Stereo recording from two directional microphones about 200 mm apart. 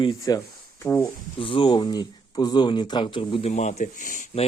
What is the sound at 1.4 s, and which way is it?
Speech, 25° left (ahead or behind).